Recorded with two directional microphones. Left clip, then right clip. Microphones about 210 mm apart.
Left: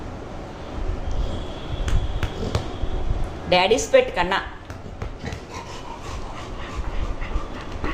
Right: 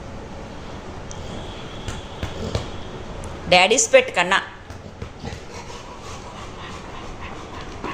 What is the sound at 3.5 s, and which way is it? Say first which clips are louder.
Speech: right 3 dB; 15° right (ahead or behind).